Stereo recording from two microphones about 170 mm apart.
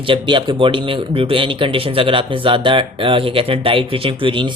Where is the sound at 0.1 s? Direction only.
30° right (ahead or behind).